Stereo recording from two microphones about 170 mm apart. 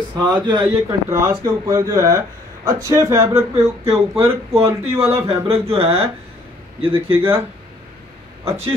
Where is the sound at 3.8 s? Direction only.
35° right (ahead or behind).